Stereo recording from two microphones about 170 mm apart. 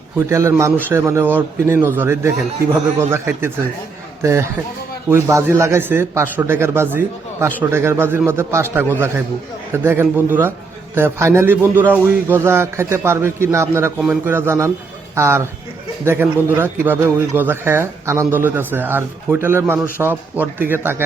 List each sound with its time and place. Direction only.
0.3 s a man's voice: 15° right (ahead or behind)